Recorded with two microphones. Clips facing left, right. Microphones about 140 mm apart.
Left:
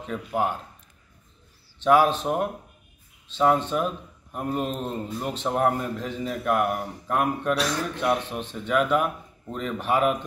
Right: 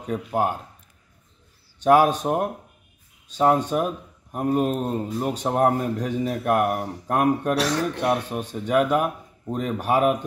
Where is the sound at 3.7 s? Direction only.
45° right (ahead or behind).